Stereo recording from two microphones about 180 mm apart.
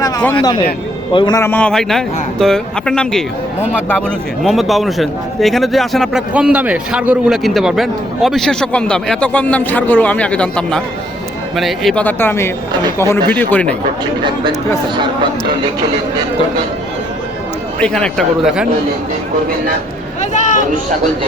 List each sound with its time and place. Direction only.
0.3 s a man's voice: 30° left (ahead or behind)
1.4 s a man's voice: 10° left (ahead or behind)
4.4 s a man's voice: centre (ahead or behind)
14.9 s speech: 25° right (ahead or behind)
17.7 s a man's voice: 5° left (ahead or behind)
20.3 s a sound: 45° left (ahead or behind)